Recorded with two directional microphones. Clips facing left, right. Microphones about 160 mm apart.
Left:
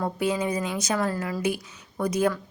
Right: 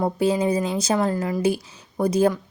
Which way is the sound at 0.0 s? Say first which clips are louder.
Right 5 dB; 30° right (ahead or behind).